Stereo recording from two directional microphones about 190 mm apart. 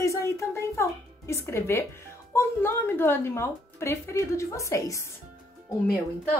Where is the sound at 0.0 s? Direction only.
15° left (ahead or behind).